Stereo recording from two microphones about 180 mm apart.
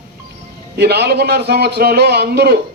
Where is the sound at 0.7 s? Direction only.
65° right (ahead or behind).